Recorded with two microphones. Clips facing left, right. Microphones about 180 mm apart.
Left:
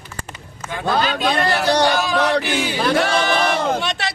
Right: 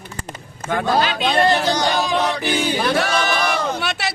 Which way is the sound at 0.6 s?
55° right (ahead or behind).